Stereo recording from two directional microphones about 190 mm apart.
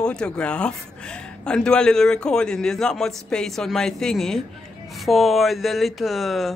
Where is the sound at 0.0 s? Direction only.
5° left (ahead or behind).